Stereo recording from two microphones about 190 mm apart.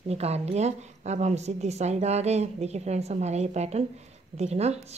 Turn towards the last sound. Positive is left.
turn(degrees=-35)  # may be behind; listen again after turning